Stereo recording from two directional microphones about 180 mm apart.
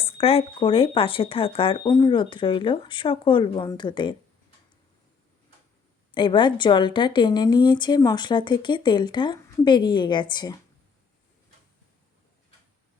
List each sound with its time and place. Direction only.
0.0 s a woman's voice: 30° left (ahead or behind)
6.1 s a woman's voice: 25° left (ahead or behind)